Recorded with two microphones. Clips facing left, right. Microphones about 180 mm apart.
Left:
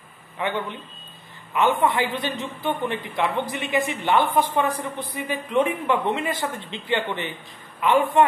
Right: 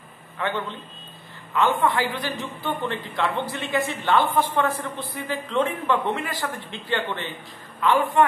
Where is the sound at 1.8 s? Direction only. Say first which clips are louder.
Left 1 dB; 20° left (ahead or behind).